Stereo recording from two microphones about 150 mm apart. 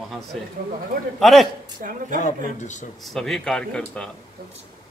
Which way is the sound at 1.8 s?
65° right (ahead or behind).